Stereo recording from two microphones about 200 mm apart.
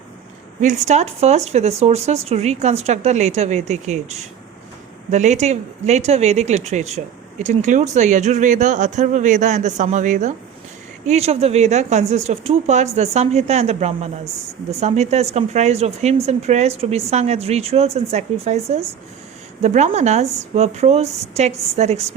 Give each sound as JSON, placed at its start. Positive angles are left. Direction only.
{"t": 0.6, "sound": "speech", "side_deg": -35}